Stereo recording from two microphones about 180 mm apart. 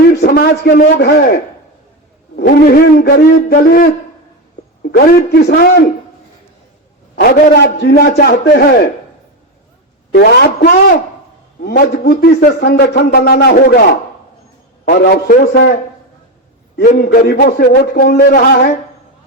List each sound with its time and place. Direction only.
0.1 s speech: 60° left (ahead or behind)
3.5 s a sound: 50° left (ahead or behind)
4.8 s speech: 65° left (ahead or behind)
7.4 s speech: 65° left (ahead or behind)
10.2 s speech: 65° left (ahead or behind)
14.8 s speech: 55° left (ahead or behind)
16.8 s speech: 50° left (ahead or behind)